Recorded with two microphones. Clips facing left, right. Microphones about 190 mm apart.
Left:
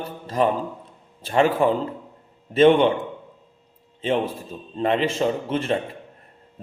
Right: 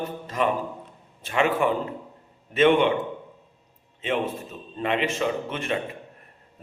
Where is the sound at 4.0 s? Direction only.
35° left (ahead or behind).